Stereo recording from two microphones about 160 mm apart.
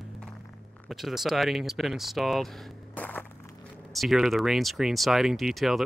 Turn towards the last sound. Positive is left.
turn(degrees=0)  # may be behind; listen again after turning